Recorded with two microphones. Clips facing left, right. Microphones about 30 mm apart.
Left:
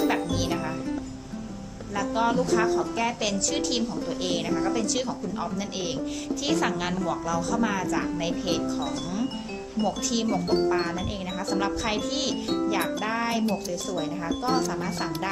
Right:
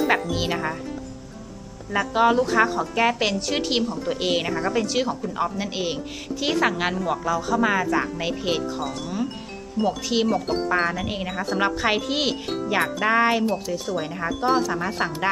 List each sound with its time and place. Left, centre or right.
0.1 s speech: right
1.9 s a woman's voice: right; by 10.6 s centre
10.7 s a woman's voice: right
14.4 s a woman's voice: centre